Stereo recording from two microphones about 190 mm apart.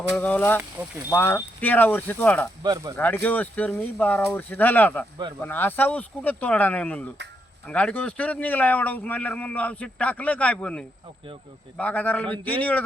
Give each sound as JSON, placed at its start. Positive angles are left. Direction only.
{"t": 0.2, "sound": "a man's voice", "side_deg": 10}
{"t": 2.6, "sound": "speech", "side_deg": -15}
{"t": 3.2, "sound": "a man's voice", "side_deg": 10}